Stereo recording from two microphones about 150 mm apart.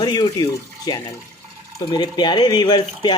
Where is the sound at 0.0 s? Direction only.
25° left (ahead or behind).